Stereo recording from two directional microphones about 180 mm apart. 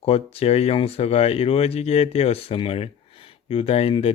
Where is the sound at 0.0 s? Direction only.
35° left (ahead or behind).